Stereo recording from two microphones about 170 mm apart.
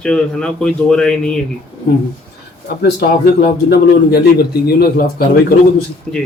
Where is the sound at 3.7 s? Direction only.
65° left (ahead or behind).